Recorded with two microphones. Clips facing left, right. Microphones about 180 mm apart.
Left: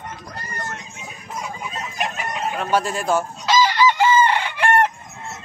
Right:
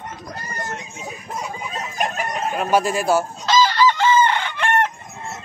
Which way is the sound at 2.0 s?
45° right (ahead or behind).